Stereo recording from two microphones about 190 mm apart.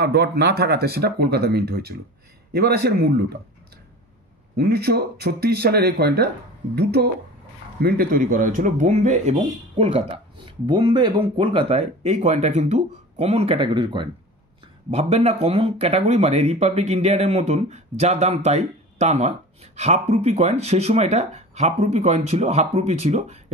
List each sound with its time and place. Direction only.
0.0 s speech: 60° right (ahead or behind)
4.6 s speech: 55° right (ahead or behind); by 23.4 s 35° right (ahead or behind)